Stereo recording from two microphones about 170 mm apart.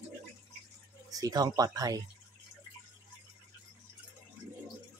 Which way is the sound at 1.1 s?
20° right (ahead or behind).